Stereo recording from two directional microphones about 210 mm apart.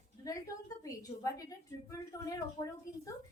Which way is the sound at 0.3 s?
15° left (ahead or behind).